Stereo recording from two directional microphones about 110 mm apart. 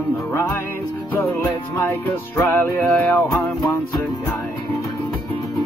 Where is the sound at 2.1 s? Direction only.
20° left (ahead or behind).